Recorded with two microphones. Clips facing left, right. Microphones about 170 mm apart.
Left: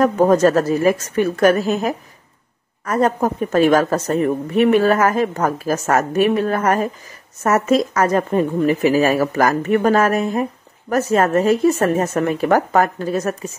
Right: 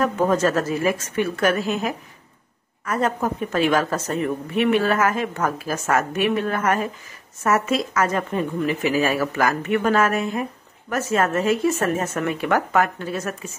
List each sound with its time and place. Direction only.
0.0 s a woman's voice: 40° left (ahead or behind)